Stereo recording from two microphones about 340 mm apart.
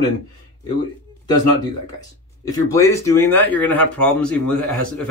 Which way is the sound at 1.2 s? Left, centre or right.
Centre.